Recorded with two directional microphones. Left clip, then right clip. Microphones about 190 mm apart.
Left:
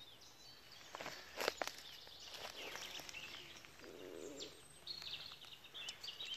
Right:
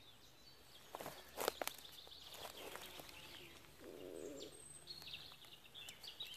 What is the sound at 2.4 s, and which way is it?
Walk, 15° left (ahead or behind).